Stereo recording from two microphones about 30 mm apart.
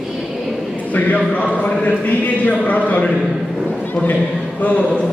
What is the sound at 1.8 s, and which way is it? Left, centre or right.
A man's voice, left.